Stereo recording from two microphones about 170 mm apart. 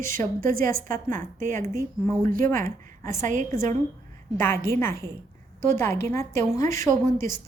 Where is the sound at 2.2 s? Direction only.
55° right (ahead or behind).